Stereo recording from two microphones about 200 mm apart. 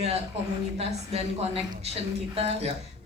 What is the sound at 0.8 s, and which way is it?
A man's voice, 30° right (ahead or behind).